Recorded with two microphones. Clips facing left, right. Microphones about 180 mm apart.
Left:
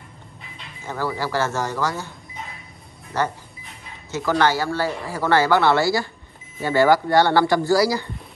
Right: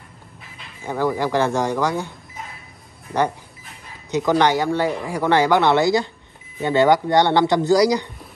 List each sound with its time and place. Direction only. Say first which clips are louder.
0.8 s speech: right 5 dB; 15° right (ahead or behind)
4.1 s speech: right 3 dB; 15° right (ahead or behind)